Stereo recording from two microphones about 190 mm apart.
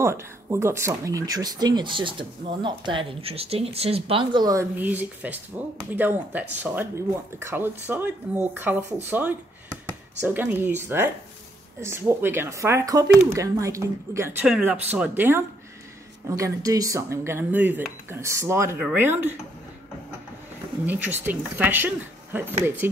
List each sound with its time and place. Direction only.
0.0 s speech: 15° right (ahead or behind)
10.2 s speech: 10° right (ahead or behind)
20.8 s speech: 10° right (ahead or behind)